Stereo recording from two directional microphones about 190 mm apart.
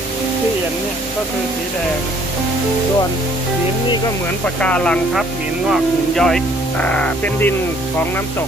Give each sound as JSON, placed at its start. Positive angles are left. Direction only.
{"t": 4.6, "sound": "speech", "side_deg": 5}